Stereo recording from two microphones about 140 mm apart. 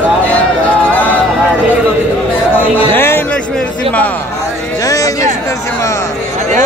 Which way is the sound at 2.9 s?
15° left (ahead or behind).